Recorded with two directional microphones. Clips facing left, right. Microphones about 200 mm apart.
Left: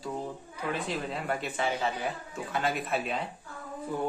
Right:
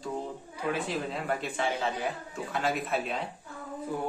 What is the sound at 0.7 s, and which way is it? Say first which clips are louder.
Speech: left 1 dB; centre (ahead or behind).